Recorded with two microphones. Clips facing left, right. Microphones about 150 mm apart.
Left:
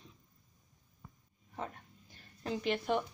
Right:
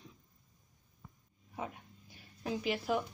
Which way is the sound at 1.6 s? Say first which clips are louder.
Even; 10° right (ahead or behind).